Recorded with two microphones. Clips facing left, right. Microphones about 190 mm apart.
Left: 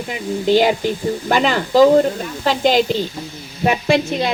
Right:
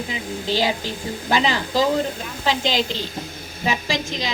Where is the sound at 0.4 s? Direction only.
50° left (ahead or behind).